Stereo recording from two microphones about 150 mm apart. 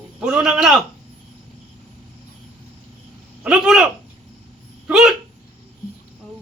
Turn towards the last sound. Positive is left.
turn(degrees=-5)  # may be behind; listen again after turning